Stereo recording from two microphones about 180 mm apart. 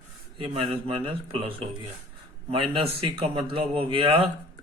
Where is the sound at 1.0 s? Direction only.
30° right (ahead or behind).